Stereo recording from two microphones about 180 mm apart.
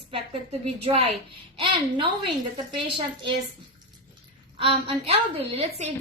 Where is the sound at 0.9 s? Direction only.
35° right (ahead or behind).